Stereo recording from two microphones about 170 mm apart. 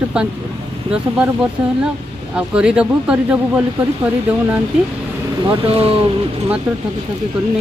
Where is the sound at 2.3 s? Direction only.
5° right (ahead or behind).